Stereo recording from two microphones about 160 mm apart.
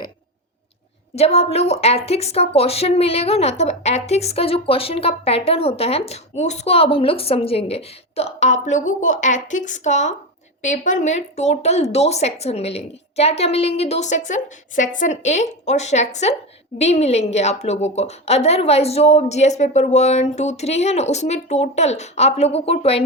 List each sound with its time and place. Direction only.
1.1 s a woman's voice: 40° left (ahead or behind)